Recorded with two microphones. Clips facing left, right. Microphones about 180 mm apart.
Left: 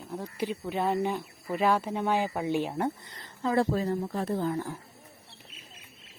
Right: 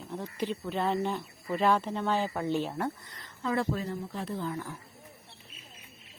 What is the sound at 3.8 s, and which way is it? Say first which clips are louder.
Speech: left 6 dB; 45° left (ahead or behind).